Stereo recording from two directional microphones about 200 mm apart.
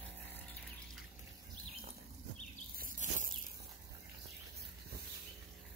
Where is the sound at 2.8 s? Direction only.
40° right (ahead or behind).